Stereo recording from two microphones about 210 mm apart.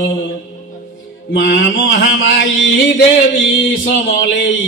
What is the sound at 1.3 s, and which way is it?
Mantra, 55° left (ahead or behind).